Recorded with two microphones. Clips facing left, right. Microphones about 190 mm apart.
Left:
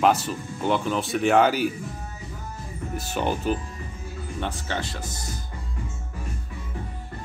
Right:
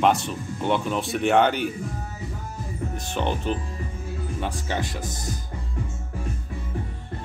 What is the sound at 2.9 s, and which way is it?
Speech, 5° left (ahead or behind).